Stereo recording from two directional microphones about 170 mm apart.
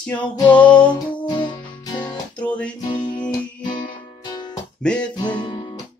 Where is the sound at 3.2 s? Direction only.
25° left (ahead or behind).